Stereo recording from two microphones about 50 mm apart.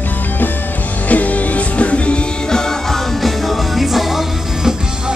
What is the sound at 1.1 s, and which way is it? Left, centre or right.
Music, left.